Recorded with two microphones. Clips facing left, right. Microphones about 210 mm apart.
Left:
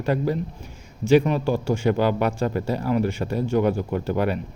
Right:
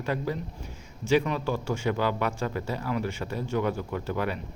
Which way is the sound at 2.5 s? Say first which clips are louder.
Left 7 dB; 40° left (ahead or behind).